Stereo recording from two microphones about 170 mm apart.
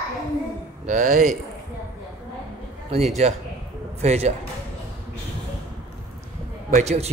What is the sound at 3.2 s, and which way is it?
A man's voice, 40° right (ahead or behind).